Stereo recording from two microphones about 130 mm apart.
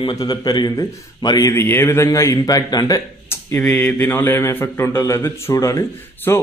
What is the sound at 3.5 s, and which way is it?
A man's voice, 10° left (ahead or behind).